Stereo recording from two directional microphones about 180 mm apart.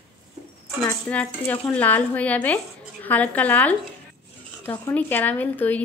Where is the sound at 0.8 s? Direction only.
10° left (ahead or behind).